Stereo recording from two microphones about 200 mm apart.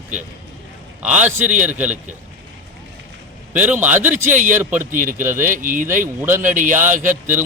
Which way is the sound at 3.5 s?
10° right (ahead or behind).